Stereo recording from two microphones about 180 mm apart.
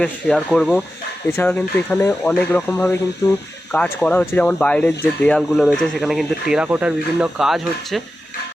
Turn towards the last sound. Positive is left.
turn(degrees=0)  # may be behind; listen again after turning